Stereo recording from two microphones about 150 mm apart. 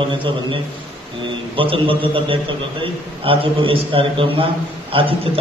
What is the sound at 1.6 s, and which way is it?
A man's voice, 35° right (ahead or behind).